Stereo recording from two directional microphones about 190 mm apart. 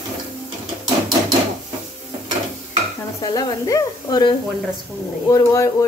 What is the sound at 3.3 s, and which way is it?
Speech, 20° left (ahead or behind).